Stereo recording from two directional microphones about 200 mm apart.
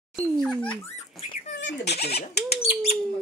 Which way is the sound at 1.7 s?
30° left (ahead or behind).